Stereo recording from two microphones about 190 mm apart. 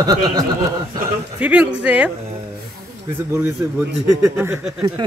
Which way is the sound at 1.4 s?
5° right (ahead or behind).